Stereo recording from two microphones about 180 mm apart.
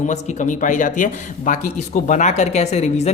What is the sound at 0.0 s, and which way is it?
A man's voice, 45° left (ahead or behind).